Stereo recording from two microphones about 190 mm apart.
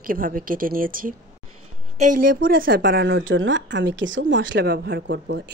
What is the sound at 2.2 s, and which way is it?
Speech, 50° right (ahead or behind).